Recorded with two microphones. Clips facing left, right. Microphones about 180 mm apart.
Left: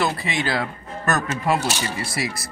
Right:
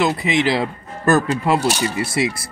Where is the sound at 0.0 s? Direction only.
20° right (ahead or behind).